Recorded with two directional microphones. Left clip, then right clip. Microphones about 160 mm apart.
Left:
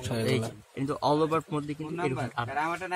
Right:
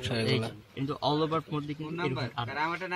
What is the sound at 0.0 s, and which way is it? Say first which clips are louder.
A man's voice: even; 10° left (ahead or behind).